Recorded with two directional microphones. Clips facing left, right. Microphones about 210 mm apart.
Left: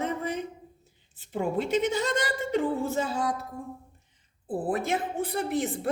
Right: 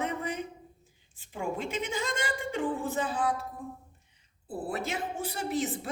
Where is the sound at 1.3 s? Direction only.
40° left (ahead or behind).